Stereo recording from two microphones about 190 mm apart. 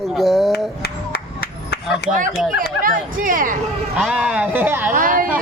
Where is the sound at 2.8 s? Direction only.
45° right (ahead or behind).